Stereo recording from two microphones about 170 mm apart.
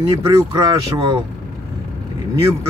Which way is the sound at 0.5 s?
30° right (ahead or behind).